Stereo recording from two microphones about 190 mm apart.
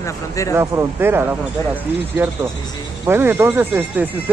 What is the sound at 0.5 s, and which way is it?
Speech, 10° right (ahead or behind).